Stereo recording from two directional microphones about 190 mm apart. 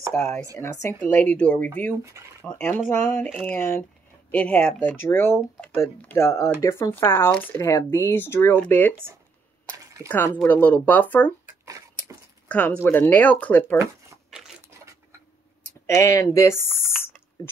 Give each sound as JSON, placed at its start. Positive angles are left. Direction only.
{"t": 0.1, "sound": "speech", "side_deg": 10}
{"t": 10.0, "sound": "speech", "side_deg": 10}
{"t": 11.4, "sound": "a sound", "side_deg": -15}
{"t": 12.4, "sound": "speech", "side_deg": 10}
{"t": 15.9, "sound": "speech", "side_deg": 15}